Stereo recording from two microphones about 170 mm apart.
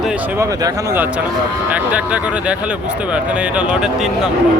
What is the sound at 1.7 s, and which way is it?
Speech, 10° right (ahead or behind).